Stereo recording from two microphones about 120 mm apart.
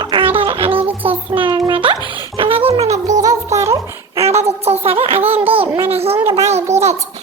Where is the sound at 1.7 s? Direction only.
45° right (ahead or behind).